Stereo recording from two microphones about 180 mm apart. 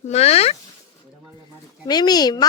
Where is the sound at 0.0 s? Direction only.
35° left (ahead or behind).